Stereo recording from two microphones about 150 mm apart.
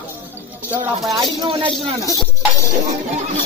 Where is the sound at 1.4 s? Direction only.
40° right (ahead or behind).